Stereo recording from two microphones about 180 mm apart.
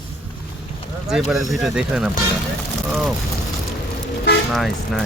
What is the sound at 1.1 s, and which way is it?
Speech, centre (ahead or behind).